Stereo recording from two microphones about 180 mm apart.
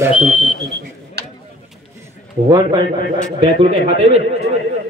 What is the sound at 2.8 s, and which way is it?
Speech, 55° left (ahead or behind).